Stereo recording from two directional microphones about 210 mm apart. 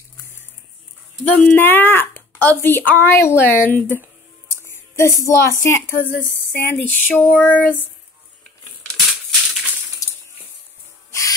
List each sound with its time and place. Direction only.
1.2 s a woman's voice: 10° left (ahead or behind)
5.9 s speech: 40° left (ahead or behind)
6.6 s speech: 10° left (ahead or behind)
11.1 s owl: 15° left (ahead or behind)